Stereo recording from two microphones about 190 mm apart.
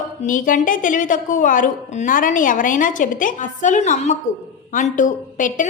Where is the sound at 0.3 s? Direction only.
45° left (ahead or behind).